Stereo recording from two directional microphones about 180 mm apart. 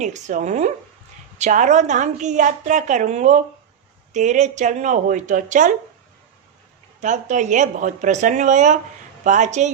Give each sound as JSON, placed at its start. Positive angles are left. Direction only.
{"t": 0.0, "sound": "a woman's voice", "side_deg": -40}
{"t": 7.0, "sound": "a woman's voice", "side_deg": -40}